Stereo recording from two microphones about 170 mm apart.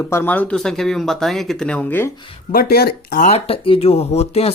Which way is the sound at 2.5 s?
65° left (ahead or behind).